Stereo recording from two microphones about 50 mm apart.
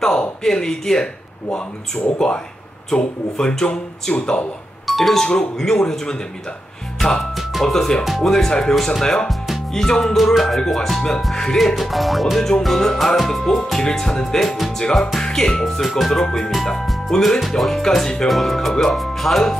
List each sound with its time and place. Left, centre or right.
0.0 s speech: centre
4.1 s speech: left
4.8 s speech: centre
7.3 s music: centre
7.7 s speech: centre
9.3 s music: centre
9.8 s speech: centre
10.1 s music: centre
13.7 s speech: centre
18.3 s music: centre